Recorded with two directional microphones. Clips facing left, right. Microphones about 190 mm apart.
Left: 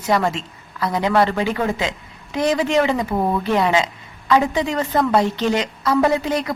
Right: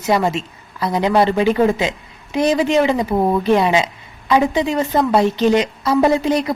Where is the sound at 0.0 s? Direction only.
10° right (ahead or behind).